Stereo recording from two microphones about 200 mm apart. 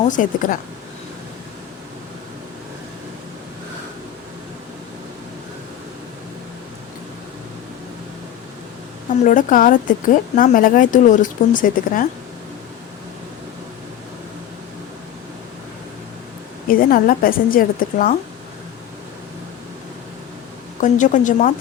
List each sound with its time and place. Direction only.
0.1 s speech: 40° left (ahead or behind)
9.2 s speech: 40° left (ahead or behind)
16.6 s a woman's voice: 45° left (ahead or behind)
20.8 s speech: 40° left (ahead or behind)